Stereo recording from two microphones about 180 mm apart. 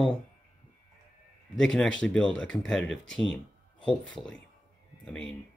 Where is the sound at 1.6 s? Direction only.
5° left (ahead or behind).